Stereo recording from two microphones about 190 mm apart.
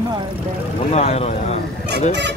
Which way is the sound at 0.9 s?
35° left (ahead or behind).